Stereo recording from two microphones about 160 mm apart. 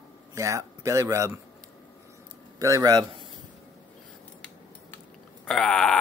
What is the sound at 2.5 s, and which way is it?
Speech, 20° right (ahead or behind).